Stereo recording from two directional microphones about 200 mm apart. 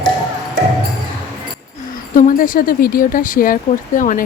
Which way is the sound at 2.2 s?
45° left (ahead or behind).